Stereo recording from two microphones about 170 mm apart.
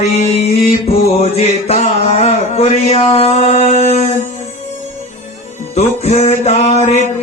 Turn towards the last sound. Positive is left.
turn(degrees=40)  # may be behind; listen again after turning